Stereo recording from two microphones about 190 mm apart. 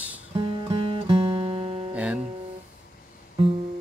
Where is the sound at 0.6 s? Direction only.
25° right (ahead or behind).